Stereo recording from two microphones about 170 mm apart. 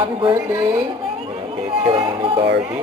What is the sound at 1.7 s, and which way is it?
Music, 30° right (ahead or behind).